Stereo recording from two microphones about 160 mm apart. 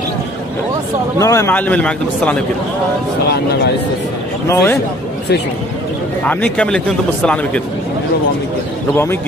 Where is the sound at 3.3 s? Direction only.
90° left.